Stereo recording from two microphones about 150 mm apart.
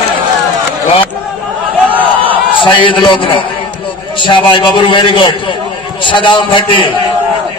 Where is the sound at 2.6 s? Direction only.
35° left (ahead or behind).